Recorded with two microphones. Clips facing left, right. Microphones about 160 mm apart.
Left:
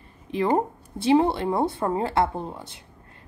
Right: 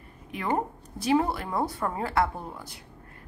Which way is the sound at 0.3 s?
30° left (ahead or behind).